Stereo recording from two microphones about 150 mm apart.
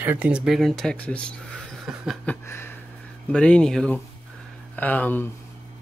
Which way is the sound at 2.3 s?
15° left (ahead or behind).